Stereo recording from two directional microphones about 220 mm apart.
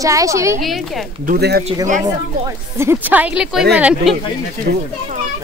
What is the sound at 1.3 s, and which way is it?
Speech, 45° right (ahead or behind).